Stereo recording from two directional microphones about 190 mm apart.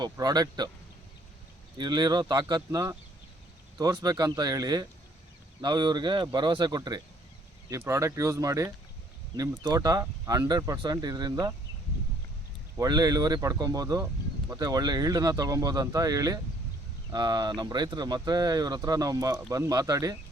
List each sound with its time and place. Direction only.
0.0 s speech: 20° right (ahead or behind)
1.8 s speech: 25° right (ahead or behind)
12.7 s speech: 20° right (ahead or behind)